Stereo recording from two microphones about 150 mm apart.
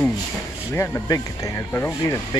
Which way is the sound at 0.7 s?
20° left (ahead or behind).